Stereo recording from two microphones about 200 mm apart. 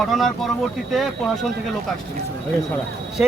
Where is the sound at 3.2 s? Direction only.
5° right (ahead or behind).